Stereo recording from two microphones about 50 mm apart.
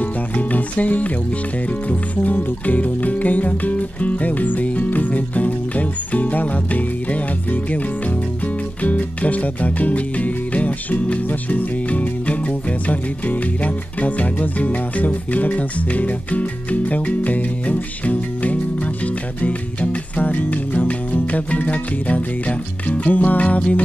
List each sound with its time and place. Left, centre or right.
0.0 s music: left
2.3 s music: left
8.8 s music: left